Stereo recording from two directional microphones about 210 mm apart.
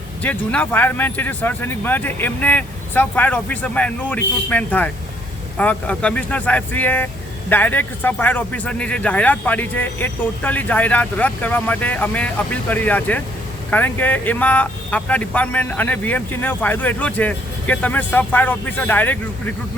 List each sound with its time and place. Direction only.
0.2 s speech: 5° left (ahead or behind)